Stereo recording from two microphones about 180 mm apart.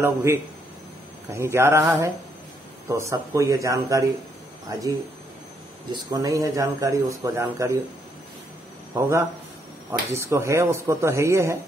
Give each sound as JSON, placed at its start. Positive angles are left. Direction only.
{"t": 0.0, "sound": "a man's voice", "side_deg": -15}
{"t": 2.9, "sound": "a man's voice", "side_deg": -15}
{"t": 9.8, "sound": "a man's voice", "side_deg": -15}